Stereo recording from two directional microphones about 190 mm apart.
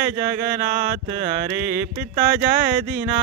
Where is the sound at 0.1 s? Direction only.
40° right (ahead or behind).